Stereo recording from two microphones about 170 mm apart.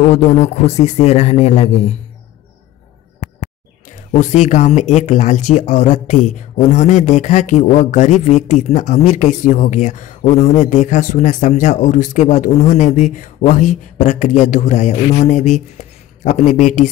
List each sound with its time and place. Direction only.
0.1 s a man's voice: 40° left (ahead or behind)
4.2 s speech: 45° left (ahead or behind)